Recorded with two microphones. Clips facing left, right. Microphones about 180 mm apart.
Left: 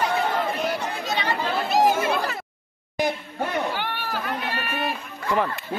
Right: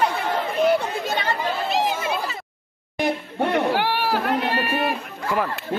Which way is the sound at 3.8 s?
75° right (ahead or behind).